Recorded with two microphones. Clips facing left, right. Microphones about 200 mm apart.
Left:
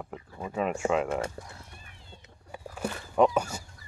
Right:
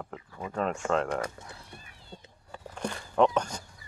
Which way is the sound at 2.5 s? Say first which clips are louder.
Left 1 dB; 5° left (ahead or behind).